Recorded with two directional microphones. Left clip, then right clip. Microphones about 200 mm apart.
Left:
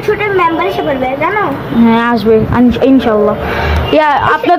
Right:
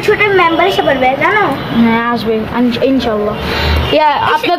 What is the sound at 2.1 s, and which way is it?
A woman's voice, 30° left (ahead or behind).